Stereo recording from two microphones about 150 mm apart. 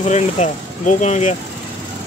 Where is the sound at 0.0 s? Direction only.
55° left (ahead or behind).